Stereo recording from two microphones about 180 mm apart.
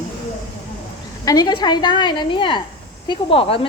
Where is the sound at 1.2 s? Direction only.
20° left (ahead or behind).